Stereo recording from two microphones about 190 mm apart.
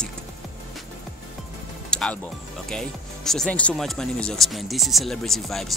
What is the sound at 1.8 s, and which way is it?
Music, 5° left (ahead or behind).